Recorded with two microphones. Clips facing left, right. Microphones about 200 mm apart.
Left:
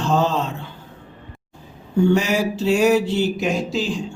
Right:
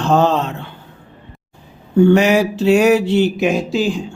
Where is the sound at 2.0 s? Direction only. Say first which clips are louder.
Right 6 dB; 65° right (ahead or behind).